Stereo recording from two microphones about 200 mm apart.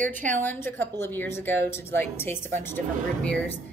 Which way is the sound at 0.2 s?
10° left (ahead or behind).